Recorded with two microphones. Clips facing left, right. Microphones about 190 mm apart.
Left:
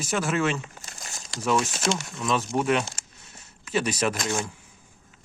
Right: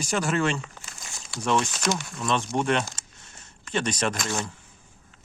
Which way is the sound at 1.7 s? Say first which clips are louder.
Even; 25° left (ahead or behind).